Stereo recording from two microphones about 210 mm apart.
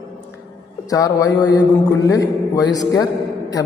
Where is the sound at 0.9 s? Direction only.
15° left (ahead or behind).